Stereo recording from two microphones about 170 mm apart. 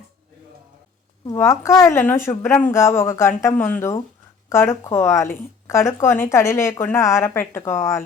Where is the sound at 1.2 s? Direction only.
15° left (ahead or behind).